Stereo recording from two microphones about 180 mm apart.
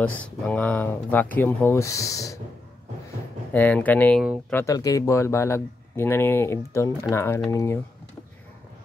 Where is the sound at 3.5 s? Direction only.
10° left (ahead or behind).